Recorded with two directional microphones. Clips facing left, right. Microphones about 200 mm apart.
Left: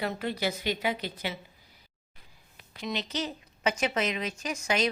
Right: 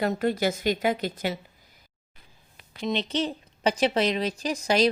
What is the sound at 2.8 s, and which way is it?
A woman's voice, 25° right (ahead or behind).